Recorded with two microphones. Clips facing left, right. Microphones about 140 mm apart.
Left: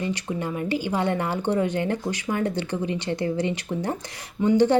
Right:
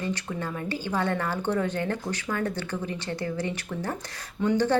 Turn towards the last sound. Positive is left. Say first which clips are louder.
# left 5 dB
turn(degrees=15)  # may be behind; listen again after turning